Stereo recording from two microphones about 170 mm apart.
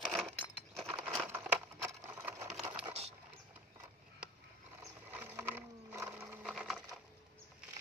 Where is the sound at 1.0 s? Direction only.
10° right (ahead or behind).